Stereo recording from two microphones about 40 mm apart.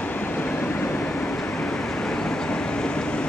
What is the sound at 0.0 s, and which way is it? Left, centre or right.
Vehicle, left.